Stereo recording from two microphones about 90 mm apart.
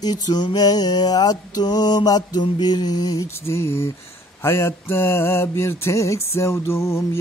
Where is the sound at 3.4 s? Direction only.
30° left (ahead or behind).